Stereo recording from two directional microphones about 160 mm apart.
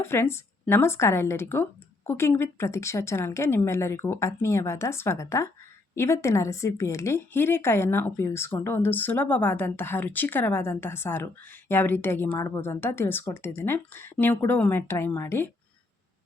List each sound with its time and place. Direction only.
0.0 s a woman's voice: 15° left (ahead or behind)